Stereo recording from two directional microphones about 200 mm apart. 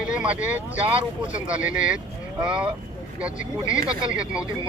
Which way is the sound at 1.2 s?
5° right (ahead or behind).